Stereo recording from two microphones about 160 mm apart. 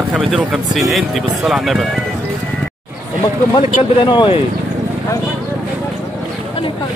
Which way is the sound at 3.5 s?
30° left (ahead or behind).